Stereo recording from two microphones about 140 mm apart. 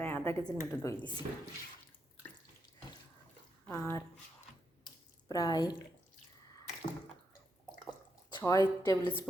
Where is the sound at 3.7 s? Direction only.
20° left (ahead or behind).